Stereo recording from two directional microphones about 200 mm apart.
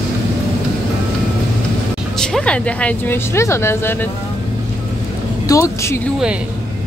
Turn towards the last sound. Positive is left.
turn(degrees=15)  # may be behind; listen again after turning